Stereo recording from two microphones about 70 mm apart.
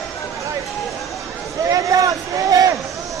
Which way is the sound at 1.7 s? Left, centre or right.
Right.